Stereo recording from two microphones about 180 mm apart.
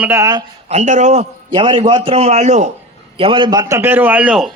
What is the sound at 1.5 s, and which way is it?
A man's voice, 25° right (ahead or behind).